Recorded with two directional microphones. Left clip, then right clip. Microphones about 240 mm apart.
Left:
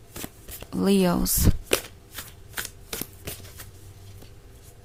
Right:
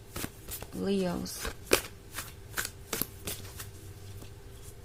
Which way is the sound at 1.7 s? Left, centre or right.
Centre.